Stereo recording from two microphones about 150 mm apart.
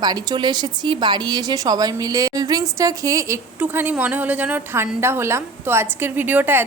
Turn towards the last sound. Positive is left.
turn(degrees=-15)  # may be behind; listen again after turning